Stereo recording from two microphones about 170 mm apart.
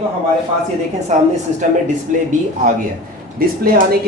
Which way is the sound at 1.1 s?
50° right (ahead or behind).